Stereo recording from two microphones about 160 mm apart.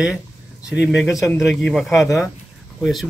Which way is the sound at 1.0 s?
20° left (ahead or behind).